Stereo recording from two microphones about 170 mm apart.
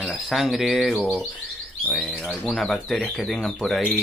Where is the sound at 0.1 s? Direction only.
Centre (ahead or behind).